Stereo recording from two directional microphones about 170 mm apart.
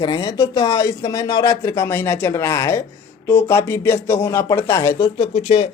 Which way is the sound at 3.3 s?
15° left (ahead or behind).